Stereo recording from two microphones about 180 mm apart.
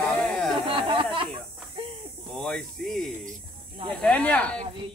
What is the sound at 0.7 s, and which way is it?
Speech, 30° right (ahead or behind).